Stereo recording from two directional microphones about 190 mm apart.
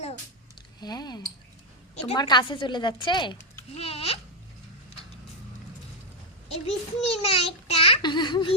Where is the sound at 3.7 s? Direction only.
30° left (ahead or behind).